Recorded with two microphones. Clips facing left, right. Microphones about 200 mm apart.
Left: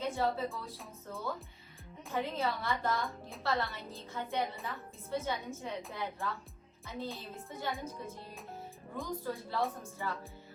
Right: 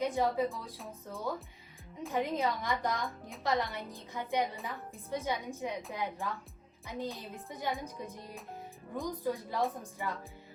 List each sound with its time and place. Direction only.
0.0 s a woman's voice: 15° right (ahead or behind)